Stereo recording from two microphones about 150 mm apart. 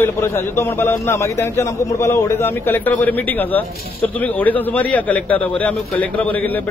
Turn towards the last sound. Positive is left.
turn(degrees=10)  # may be behind; listen again after turning